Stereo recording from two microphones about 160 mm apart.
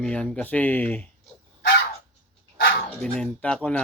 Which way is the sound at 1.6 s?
90° left.